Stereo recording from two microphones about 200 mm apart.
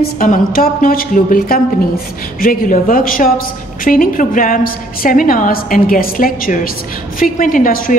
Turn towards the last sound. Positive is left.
turn(degrees=45)  # may be behind; listen again after turning